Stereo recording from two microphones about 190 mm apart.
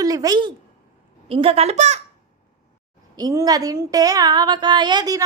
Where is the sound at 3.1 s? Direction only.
20° right (ahead or behind).